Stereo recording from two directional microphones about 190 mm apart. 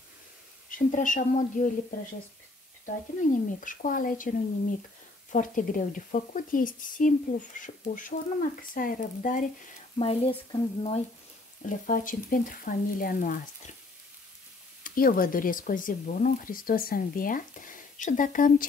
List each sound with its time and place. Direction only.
0.7 s speech: 45° left (ahead or behind)
9.9 s speech: 30° left (ahead or behind)
11.8 s speech: 45° left (ahead or behind)
14.8 s speech: 50° left (ahead or behind)